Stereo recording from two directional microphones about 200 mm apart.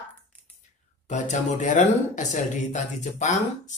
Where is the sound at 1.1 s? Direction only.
35° left (ahead or behind).